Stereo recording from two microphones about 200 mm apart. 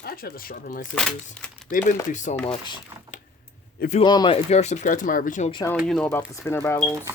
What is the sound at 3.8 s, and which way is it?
Speech, 35° left (ahead or behind).